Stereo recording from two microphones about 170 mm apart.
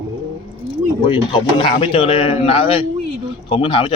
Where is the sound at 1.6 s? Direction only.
30° left (ahead or behind).